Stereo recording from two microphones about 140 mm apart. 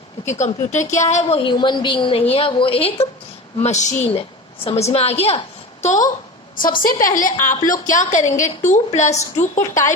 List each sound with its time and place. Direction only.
0.3 s a woman's voice: 55° left (ahead or behind); by 3.1 s 40° left (ahead or behind)
3.6 s a woman's voice: 55° left (ahead or behind)
4.1 s a woman's voice: 45° left (ahead or behind)
6.8 s a woman's voice: 75° left (ahead or behind); by 9.6 s 55° left (ahead or behind)